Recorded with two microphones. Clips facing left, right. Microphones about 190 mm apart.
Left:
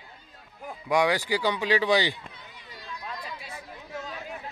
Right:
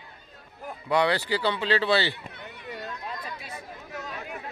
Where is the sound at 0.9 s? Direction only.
10° left (ahead or behind).